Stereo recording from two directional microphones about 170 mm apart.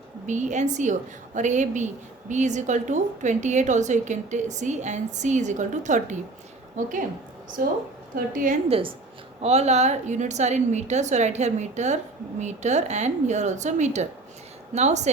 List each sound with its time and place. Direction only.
0.3 s a woman's voice: 45° right (ahead or behind)
9.4 s a woman's voice: 40° right (ahead or behind)